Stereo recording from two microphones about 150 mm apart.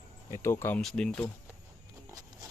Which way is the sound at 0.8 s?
5° left (ahead or behind).